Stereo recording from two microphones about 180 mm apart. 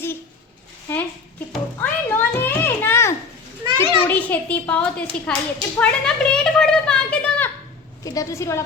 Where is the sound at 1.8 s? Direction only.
10° left (ahead or behind).